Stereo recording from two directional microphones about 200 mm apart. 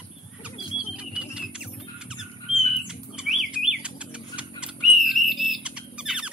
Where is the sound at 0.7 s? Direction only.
30° left (ahead or behind).